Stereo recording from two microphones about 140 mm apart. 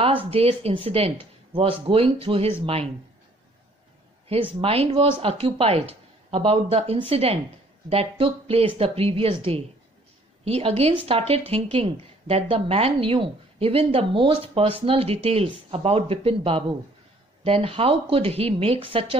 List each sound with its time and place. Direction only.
0.3 s speech: 45° right (ahead or behind)
4.3 s a woman's voice: 40° right (ahead or behind)